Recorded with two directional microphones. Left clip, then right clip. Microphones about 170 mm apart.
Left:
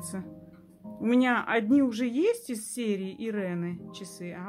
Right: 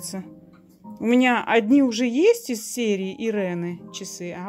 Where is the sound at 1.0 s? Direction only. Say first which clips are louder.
Right 6 dB; 25° right (ahead or behind).